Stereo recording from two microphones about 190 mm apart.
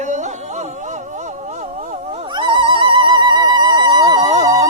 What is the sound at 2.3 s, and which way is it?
Music, 25° right (ahead or behind).